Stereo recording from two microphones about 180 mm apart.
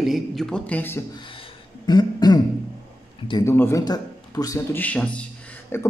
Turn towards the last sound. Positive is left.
turn(degrees=15)  # may be behind; listen again after turning